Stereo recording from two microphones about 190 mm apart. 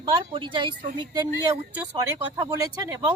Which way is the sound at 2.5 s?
15° right (ahead or behind).